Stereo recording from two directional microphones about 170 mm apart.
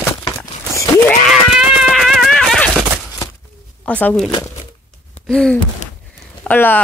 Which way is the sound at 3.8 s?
10° left (ahead or behind).